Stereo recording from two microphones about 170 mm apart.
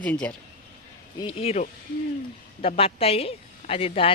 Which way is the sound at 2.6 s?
35° left (ahead or behind).